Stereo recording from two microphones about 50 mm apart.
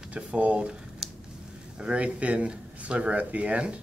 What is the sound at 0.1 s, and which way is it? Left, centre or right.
Speech, right.